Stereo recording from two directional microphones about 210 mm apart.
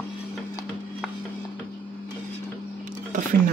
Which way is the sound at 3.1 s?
40° right (ahead or behind).